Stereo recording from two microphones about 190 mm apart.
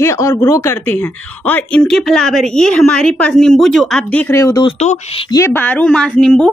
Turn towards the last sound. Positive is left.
turn(degrees=5)  # may be behind; listen again after turning